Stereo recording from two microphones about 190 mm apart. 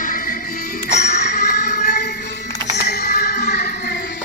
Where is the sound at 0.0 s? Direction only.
45° left (ahead or behind).